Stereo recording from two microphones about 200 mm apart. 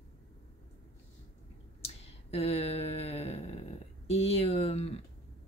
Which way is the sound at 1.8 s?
30° left (ahead or behind).